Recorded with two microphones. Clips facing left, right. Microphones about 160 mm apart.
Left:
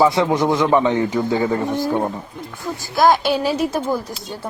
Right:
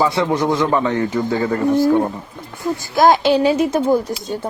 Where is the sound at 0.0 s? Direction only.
15° left (ahead or behind).